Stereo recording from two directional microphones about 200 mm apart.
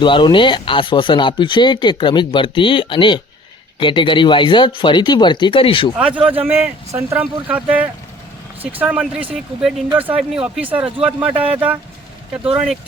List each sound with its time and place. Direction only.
0.0 s speech: 25° left (ahead or behind)
6.1 s a man's voice: 25° right (ahead or behind)
6.6 s speech: 10° right (ahead or behind)